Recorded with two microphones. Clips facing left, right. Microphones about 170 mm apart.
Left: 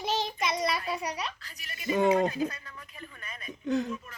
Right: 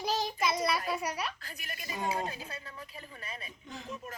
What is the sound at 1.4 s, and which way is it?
Speech, 50° right (ahead or behind).